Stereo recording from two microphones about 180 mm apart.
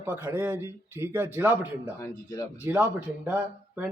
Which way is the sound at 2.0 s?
20° left (ahead or behind).